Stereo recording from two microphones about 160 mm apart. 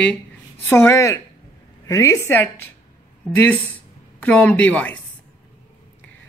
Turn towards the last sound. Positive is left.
turn(degrees=10)  # may be behind; listen again after turning